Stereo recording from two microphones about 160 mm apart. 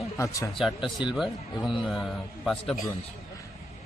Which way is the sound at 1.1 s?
Centre (ahead or behind).